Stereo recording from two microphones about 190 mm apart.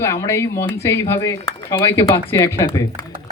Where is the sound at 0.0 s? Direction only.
15° left (ahead or behind).